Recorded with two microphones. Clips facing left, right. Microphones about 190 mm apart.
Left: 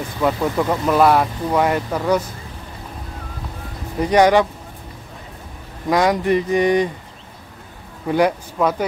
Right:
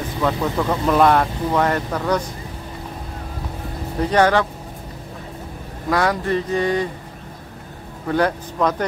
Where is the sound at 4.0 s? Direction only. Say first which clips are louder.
Left 3 dB; 15° left (ahead or behind).